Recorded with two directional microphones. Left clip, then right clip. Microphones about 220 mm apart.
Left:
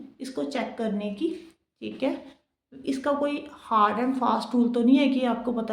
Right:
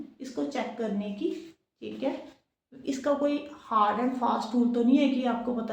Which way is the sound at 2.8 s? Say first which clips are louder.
Left 1 dB; 35° left (ahead or behind).